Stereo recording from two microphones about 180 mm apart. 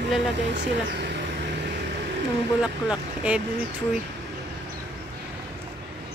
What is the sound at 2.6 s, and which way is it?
Speech, 5° right (ahead or behind).